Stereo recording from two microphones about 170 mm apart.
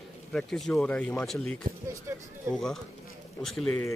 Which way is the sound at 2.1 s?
15° right (ahead or behind).